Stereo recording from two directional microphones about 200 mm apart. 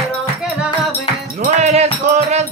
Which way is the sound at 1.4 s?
35° right (ahead or behind).